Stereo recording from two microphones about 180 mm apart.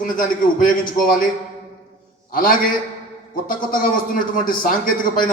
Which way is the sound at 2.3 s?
50° left (ahead or behind).